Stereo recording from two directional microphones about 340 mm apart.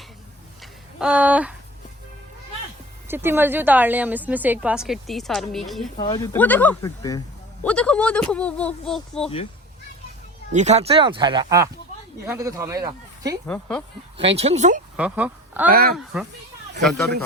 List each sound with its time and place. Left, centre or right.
0.6 s a sound: centre
3.1 s a woman's voice: centre
6.0 s a woman's voice: centre
10.5 s speech: centre
13.5 s a woman's voice: centre
14.2 s speech: centre
14.9 s speech: centre